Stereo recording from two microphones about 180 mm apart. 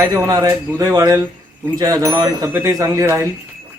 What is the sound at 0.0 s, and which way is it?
Speech, 20° right (ahead or behind).